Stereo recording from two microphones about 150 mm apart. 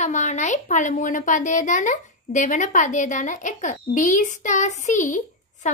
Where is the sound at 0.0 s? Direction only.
50° left (ahead or behind).